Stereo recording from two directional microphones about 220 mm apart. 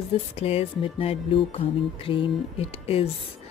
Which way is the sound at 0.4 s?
25° left (ahead or behind).